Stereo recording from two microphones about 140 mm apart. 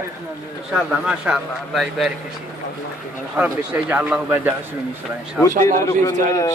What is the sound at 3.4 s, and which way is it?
A man's voice, 10° right (ahead or behind).